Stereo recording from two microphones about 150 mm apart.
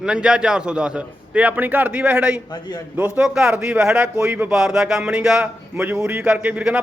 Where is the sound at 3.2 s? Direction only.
5° right (ahead or behind).